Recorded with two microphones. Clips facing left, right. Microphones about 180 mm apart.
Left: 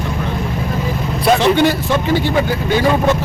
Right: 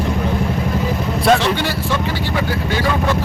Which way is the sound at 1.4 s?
15° left (ahead or behind).